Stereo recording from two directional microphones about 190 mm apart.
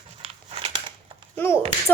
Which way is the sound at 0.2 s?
30° right (ahead or behind).